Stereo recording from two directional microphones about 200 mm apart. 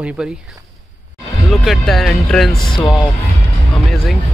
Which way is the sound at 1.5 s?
Centre (ahead or behind).